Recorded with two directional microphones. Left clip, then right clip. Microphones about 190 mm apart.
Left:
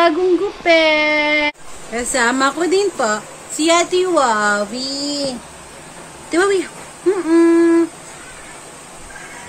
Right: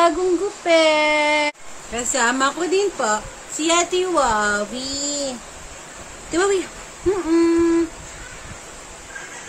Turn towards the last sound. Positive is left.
turn(degrees=0)  # may be behind; listen again after turning